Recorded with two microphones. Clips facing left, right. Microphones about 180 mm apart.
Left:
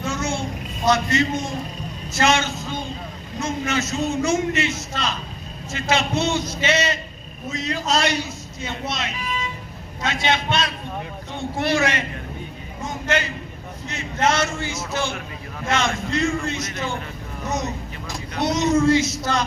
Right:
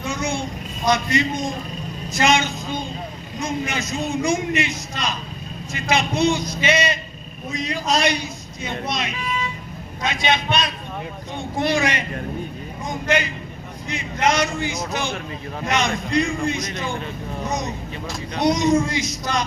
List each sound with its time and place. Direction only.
0.0 s a sound: 15° right (ahead or behind)
0.9 s a man's voice: 15° right (ahead or behind)
10.0 s a man's voice: 15° right (ahead or behind)
18.3 s a man's voice: 15° right (ahead or behind)